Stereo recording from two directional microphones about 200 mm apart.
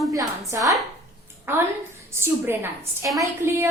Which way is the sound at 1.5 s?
10° right (ahead or behind).